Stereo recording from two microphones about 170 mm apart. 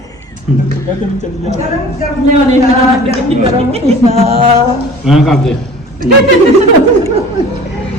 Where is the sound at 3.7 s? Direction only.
35° right (ahead or behind).